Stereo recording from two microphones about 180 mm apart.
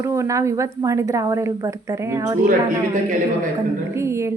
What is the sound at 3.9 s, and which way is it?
Speech, 15° right (ahead or behind).